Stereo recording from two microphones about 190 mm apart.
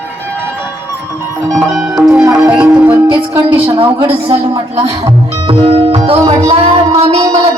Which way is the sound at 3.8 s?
30° right (ahead or behind).